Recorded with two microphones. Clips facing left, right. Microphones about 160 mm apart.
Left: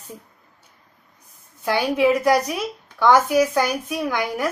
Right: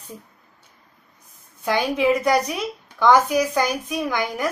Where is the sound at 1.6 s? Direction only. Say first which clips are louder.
Left 2 dB; 10° left (ahead or behind).